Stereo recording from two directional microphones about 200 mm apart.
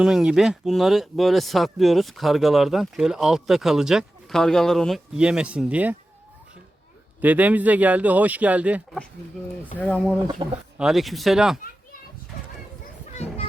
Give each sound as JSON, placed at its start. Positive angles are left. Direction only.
{"t": 0.0, "sound": "speech", "side_deg": -5}
{"t": 7.2, "sound": "speech", "side_deg": -10}
{"t": 9.7, "sound": "speech", "side_deg": 10}
{"t": 10.4, "sound": "speech", "side_deg": -25}
{"t": 10.8, "sound": "speech", "side_deg": 0}
{"t": 13.1, "sound": "children playing", "side_deg": 30}